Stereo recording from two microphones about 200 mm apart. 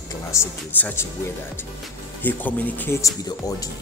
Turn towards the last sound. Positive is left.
turn(degrees=15)  # may be behind; listen again after turning